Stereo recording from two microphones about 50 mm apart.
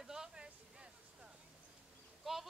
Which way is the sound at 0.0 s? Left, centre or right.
Centre.